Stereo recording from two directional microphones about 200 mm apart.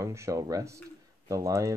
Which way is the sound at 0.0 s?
15° right (ahead or behind).